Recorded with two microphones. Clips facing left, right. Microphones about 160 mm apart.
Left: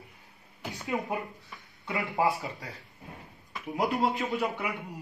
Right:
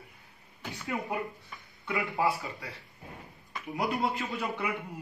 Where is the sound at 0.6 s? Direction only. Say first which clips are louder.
Left 3 dB; 20° left (ahead or behind).